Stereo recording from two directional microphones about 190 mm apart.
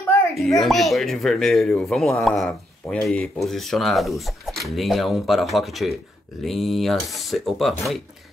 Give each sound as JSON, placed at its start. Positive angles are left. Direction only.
{"t": 0.3, "sound": "speech", "side_deg": 0}